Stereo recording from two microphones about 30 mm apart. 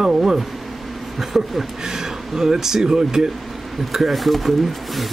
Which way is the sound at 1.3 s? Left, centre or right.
Centre.